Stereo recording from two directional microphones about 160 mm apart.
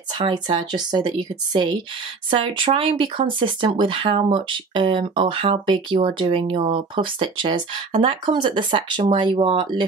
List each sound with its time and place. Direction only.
0.2 s speech: 30° right (ahead or behind)